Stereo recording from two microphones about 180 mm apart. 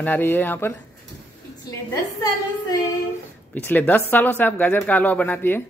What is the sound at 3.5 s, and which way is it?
Speech, 10° left (ahead or behind).